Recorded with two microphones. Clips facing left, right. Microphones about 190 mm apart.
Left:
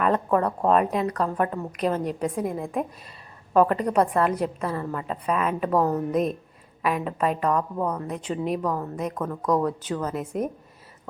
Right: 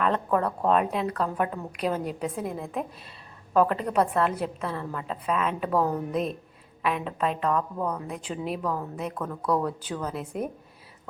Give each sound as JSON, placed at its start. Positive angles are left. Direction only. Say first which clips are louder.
{"t": 0.0, "sound": "a woman's voice", "louder": "left 3 dB", "side_deg": 5}
{"t": 7.9, "sound": "a woman's voice", "louder": "left 4 dB", "side_deg": -5}
{"t": 9.6, "sound": "a woman's voice", "louder": "left 4 dB", "side_deg": -5}